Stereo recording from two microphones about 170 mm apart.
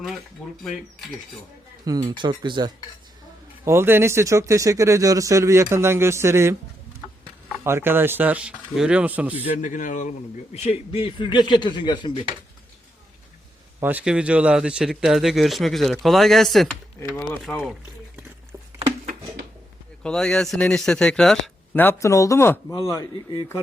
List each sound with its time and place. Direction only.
1.8 s speech: 20° right (ahead or behind)
3.7 s speech: 15° right (ahead or behind)
7.6 s speech: 15° right (ahead or behind)
9.5 s a man's voice: 50° left (ahead or behind); by 12.1 s 25° left (ahead or behind)
13.8 s a man's voice: 5° right (ahead or behind)
20.0 s a man's voice: 5° left (ahead or behind); by 23.6 s 20° left (ahead or behind)